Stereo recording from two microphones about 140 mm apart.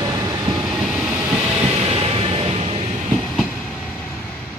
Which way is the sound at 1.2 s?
15° right (ahead or behind).